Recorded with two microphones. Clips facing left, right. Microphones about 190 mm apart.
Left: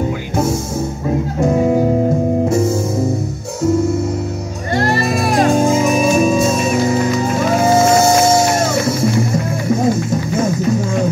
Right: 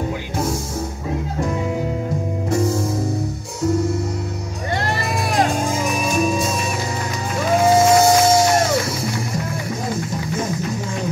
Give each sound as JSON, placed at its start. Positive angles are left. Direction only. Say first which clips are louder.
{"t": 1.4, "sound": "music", "louder": "left 10 dB", "side_deg": 45}
{"t": 2.5, "sound": "music", "louder": "left 4 dB", "side_deg": 25}
{"t": 5.1, "sound": "music", "louder": "left 4 dB", "side_deg": 25}
{"t": 5.9, "sound": "music", "louder": "left 7 dB", "side_deg": 45}
{"t": 6.2, "sound": "music", "louder": "left 7 dB", "side_deg": 25}